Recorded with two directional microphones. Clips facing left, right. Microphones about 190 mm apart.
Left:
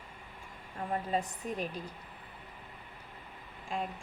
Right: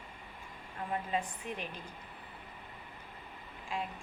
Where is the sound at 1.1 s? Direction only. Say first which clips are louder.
Left 3 dB; 40° left (ahead or behind).